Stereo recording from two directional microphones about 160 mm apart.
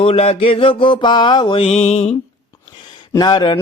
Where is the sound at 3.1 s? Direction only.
25° left (ahead or behind).